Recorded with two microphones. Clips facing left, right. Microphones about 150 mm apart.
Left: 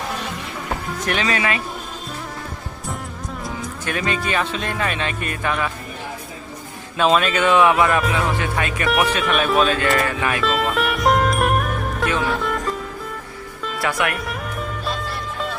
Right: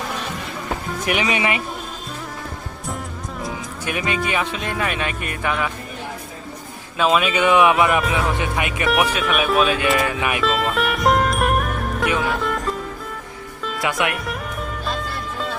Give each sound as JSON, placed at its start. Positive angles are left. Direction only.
{"t": 0.9, "sound": "speech", "side_deg": -10}
{"t": 3.8, "sound": "speech", "side_deg": -15}
{"t": 6.9, "sound": "speech", "side_deg": -5}
{"t": 8.9, "sound": "speech", "side_deg": -5}
{"t": 10.1, "sound": "speech", "side_deg": -15}
{"t": 10.4, "sound": "music", "side_deg": 0}
{"t": 13.8, "sound": "speech", "side_deg": -15}
{"t": 14.3, "sound": "music", "side_deg": 0}